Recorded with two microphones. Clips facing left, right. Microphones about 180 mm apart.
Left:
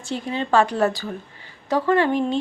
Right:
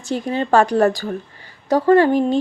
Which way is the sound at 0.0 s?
45° right (ahead or behind).